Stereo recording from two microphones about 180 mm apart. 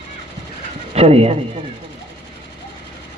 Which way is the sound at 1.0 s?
35° right (ahead or behind).